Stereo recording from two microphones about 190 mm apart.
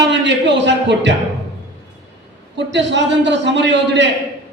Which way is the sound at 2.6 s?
70° right (ahead or behind).